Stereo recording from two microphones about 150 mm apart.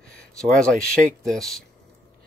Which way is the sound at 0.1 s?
5° left (ahead or behind).